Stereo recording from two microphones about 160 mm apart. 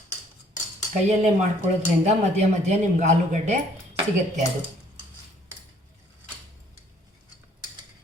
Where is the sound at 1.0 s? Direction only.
50° right (ahead or behind).